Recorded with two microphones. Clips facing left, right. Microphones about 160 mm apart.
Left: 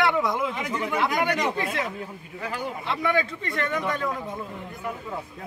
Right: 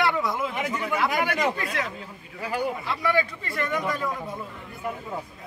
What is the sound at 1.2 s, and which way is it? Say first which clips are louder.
Speech: even; 5° right (ahead or behind).